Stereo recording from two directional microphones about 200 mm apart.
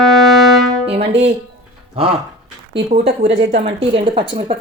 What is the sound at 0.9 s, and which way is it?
Speech, 30° right (ahead or behind).